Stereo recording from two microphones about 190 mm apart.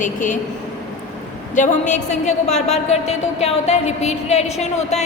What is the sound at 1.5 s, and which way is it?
A woman's voice, 40° left (ahead or behind).